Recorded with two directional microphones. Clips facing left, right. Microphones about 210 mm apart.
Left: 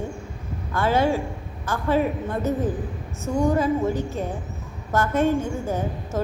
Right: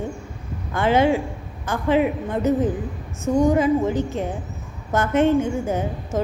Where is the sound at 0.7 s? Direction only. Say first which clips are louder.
Right 3 dB; 20° right (ahead or behind).